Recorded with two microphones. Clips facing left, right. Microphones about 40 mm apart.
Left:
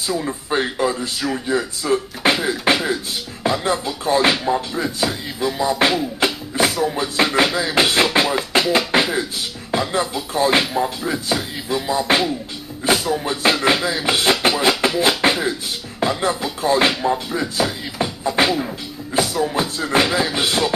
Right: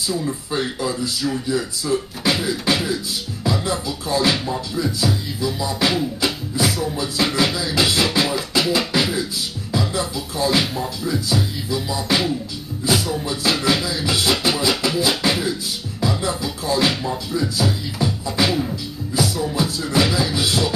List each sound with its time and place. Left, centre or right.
0.1 s speech: left
10.6 s speech: left
12.1 s speech: left
14.4 s music: left
15.0 s speech: left